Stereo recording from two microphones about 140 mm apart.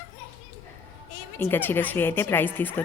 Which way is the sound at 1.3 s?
15° left (ahead or behind).